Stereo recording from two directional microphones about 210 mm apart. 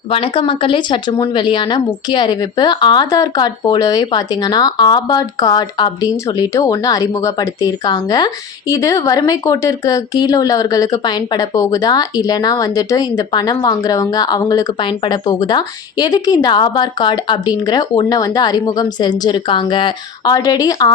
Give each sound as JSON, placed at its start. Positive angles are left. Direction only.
{"t": 0.1, "sound": "a woman's voice", "side_deg": 25}